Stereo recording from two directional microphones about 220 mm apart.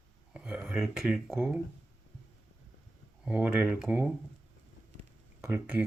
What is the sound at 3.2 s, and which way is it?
Speech, 5° right (ahead or behind).